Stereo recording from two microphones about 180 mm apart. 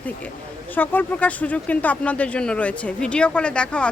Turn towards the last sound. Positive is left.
turn(degrees=5)  # may be behind; listen again after turning